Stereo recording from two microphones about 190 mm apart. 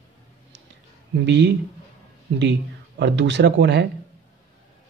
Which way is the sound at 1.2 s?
65° right (ahead or behind).